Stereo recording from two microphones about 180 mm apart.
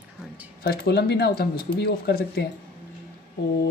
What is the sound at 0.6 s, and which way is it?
Speech, 60° left (ahead or behind).